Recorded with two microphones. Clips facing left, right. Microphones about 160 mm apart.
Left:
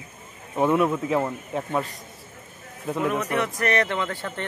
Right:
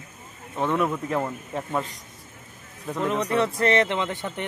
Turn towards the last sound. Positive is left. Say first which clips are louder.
# right 1 dB
turn(degrees=-20)  # may be behind; listen again after turning